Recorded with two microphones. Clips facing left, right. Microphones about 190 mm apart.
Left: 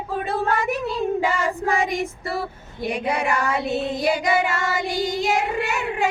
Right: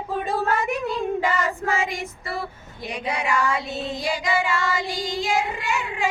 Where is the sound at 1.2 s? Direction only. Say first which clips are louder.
Left 1 dB; 10° left (ahead or behind).